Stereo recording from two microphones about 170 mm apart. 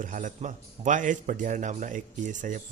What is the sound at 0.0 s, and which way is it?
A man's voice, 50° right (ahead or behind).